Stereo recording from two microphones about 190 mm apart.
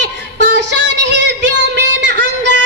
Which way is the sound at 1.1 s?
70° right (ahead or behind).